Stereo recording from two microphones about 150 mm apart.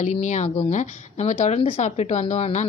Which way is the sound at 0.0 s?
50° left (ahead or behind).